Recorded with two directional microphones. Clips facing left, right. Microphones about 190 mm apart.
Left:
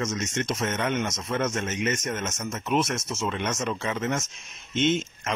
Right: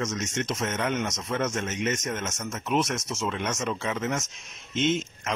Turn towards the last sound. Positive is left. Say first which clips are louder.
# left 1 dB
turn(degrees=0)  # may be behind; listen again after turning